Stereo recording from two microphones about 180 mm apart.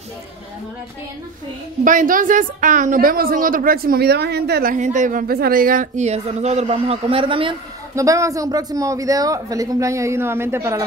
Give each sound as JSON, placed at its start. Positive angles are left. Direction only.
{"t": 1.9, "sound": "a woman's voice", "side_deg": -45}
{"t": 4.7, "sound": "speech", "side_deg": -45}
{"t": 7.9, "sound": "a man's voice", "side_deg": -15}